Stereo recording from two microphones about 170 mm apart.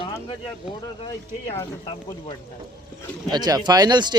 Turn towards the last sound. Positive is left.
turn(degrees=-25)  # may be behind; listen again after turning